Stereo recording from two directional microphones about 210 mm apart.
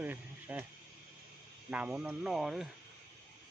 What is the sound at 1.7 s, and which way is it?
Speech, 5° right (ahead or behind).